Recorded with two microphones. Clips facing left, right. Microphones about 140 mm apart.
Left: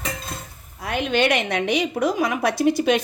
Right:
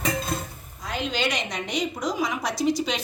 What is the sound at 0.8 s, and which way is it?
A woman's voice, 65° left (ahead or behind).